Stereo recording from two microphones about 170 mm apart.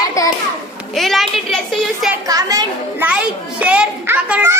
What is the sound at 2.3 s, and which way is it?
Speech, 20° right (ahead or behind).